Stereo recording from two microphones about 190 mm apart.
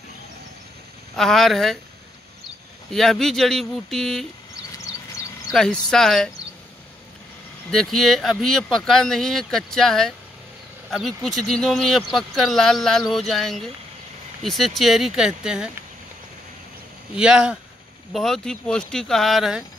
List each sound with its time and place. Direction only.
1.1 s speech: centre (ahead or behind)
2.9 s speech: centre (ahead or behind)
4.7 s a sound: 20° left (ahead or behind)
5.5 s speech: 5° left (ahead or behind)
7.7 s speech: centre (ahead or behind)
17.1 s speech: 5° right (ahead or behind)